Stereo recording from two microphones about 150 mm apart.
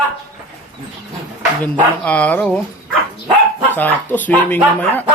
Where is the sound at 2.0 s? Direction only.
10° left (ahead or behind).